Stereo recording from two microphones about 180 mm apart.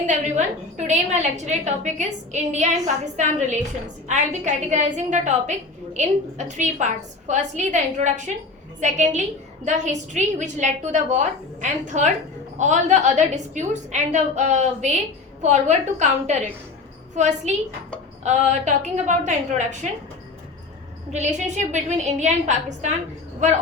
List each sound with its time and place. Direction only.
0.1 s a woman's voice: 45° right (ahead or behind)
21.1 s a woman's voice: 40° right (ahead or behind)